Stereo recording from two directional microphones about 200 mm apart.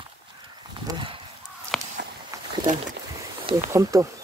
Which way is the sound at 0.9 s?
20° right (ahead or behind).